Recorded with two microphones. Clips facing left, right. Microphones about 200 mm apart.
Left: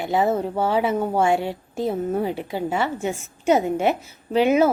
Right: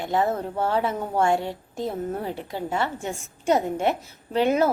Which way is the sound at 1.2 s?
5° left (ahead or behind).